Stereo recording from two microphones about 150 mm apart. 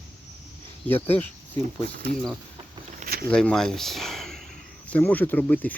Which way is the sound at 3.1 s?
90° right.